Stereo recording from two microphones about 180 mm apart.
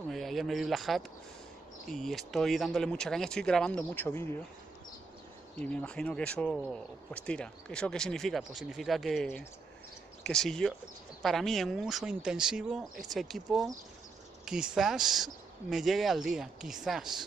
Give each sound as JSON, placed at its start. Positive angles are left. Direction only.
{"t": 0.1, "sound": "speech", "side_deg": 0}
{"t": 5.6, "sound": "speech", "side_deg": 5}